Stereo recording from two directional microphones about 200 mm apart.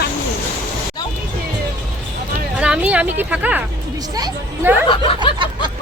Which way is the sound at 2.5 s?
5° right (ahead or behind).